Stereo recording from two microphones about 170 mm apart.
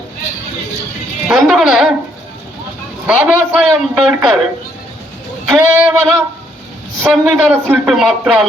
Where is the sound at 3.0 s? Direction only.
10° right (ahead or behind).